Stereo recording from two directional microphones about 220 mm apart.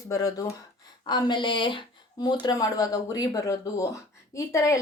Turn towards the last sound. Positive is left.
turn(degrees=15)  # may be behind; listen again after turning